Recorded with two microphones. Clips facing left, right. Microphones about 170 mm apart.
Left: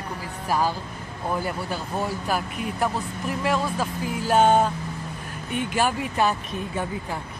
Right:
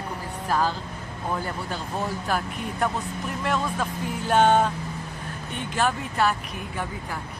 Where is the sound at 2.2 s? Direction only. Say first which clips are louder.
Left 1 dB; 5° left (ahead or behind).